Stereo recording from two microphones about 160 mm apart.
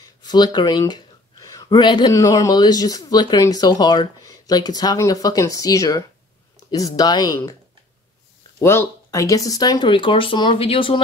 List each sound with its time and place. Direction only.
0.0 s speech: 25° left (ahead or behind)
8.5 s speech: 20° left (ahead or behind); by 11.0 s 35° left (ahead or behind)